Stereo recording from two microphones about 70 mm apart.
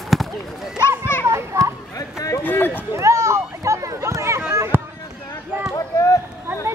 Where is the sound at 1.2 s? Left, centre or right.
Right.